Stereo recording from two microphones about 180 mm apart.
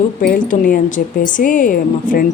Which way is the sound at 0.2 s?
50° left (ahead or behind).